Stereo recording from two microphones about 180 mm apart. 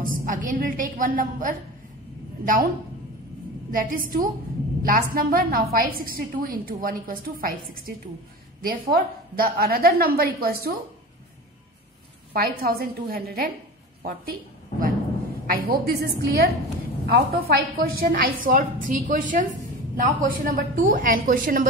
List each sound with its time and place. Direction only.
0.0 s a woman's voice: 50° right (ahead or behind)
3.7 s a woman's voice: 50° right (ahead or behind)
12.3 s a woman's voice: 60° right (ahead or behind)